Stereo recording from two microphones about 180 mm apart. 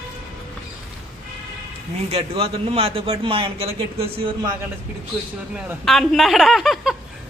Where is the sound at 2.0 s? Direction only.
35° right (ahead or behind).